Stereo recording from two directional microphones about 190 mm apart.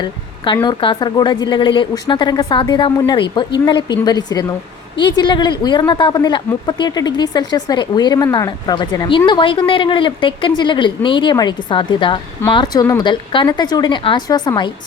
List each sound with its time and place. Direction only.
0.0 s a woman's voice: 25° left (ahead or behind)